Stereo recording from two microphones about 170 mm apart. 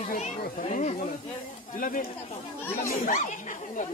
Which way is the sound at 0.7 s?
40° left (ahead or behind).